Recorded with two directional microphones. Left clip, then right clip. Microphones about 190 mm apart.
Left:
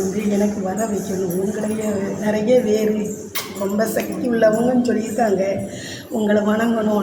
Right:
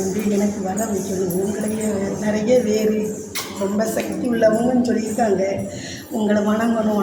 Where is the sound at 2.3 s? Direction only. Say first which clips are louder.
Left 1 dB; 20° left (ahead or behind).